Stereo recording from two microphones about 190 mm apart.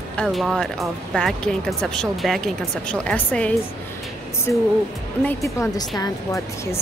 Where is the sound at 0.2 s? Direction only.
Centre (ahead or behind).